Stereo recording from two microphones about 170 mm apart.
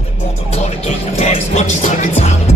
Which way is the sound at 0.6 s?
40° left (ahead or behind).